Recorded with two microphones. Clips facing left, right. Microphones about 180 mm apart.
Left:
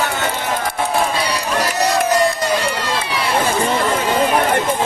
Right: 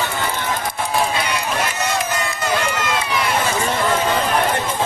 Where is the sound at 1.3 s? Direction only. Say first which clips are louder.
Left 2 dB; 35° left (ahead or behind).